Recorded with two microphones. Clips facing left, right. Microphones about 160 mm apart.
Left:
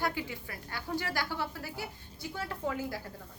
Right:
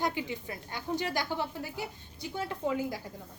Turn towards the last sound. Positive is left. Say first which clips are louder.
# right 3 dB
turn(degrees=-15)  # may be behind; listen again after turning